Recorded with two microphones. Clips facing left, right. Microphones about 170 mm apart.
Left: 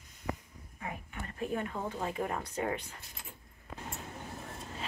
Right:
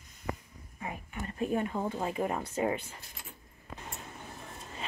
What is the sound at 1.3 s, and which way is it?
Speech, 20° right (ahead or behind).